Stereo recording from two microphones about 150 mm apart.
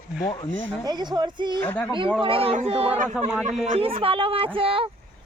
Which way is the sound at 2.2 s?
40° right (ahead or behind).